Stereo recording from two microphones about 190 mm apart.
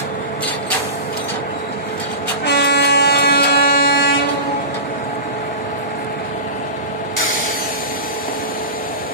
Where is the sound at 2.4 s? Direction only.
55° left (ahead or behind).